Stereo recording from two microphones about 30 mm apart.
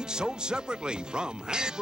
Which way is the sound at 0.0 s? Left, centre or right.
Right.